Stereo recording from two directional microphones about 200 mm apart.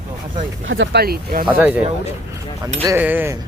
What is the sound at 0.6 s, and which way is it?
Speech, 70° right (ahead or behind).